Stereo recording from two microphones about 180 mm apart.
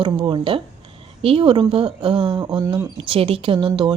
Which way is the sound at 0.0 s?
25° right (ahead or behind).